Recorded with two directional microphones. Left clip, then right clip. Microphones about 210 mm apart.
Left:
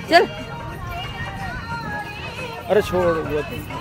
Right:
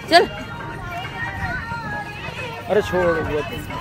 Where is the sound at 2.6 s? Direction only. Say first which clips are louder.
Left 1 dB; 10° left (ahead or behind).